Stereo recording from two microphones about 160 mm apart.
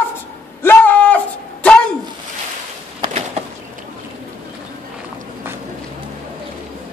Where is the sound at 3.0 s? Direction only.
35° right (ahead or behind).